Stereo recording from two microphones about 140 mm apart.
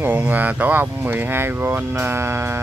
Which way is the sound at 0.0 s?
10° right (ahead or behind).